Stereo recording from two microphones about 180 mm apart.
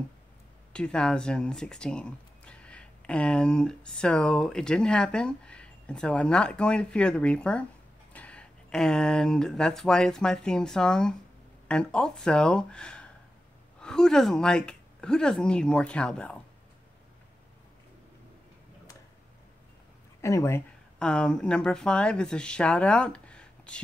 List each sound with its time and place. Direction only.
0.7 s speech: 5° left (ahead or behind)
20.2 s speech: 15° left (ahead or behind)
21.0 s speech: 5° left (ahead or behind)